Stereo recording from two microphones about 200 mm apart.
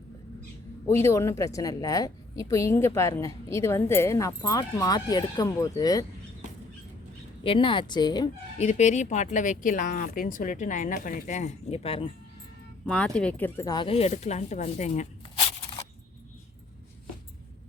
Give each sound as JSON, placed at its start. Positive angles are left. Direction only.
{"t": 0.9, "sound": "a woman's voice", "side_deg": 10}
{"t": 7.4, "sound": "speech", "side_deg": 25}
{"t": 8.5, "sound": "speech", "side_deg": 35}
{"t": 12.8, "sound": "speech", "side_deg": 5}